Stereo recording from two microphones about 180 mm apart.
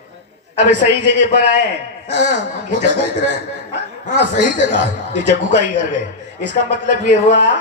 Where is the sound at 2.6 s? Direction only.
75° right (ahead or behind).